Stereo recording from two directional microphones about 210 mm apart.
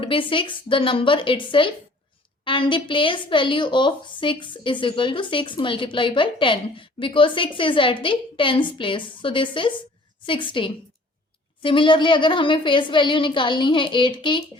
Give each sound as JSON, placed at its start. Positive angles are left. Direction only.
{"t": 0.0, "sound": "a woman's voice", "side_deg": 25}